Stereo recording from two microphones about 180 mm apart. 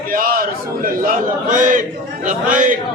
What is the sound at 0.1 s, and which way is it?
A man's voice, 50° right (ahead or behind).